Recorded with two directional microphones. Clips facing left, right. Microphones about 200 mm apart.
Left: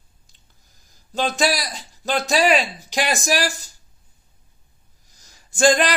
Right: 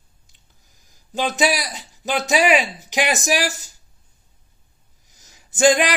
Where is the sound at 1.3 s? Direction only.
15° right (ahead or behind).